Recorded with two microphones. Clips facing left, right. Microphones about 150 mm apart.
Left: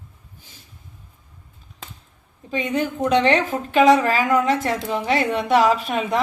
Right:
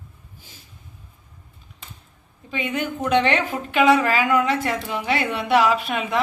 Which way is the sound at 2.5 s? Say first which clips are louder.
Left 3 dB; 35° left (ahead or behind).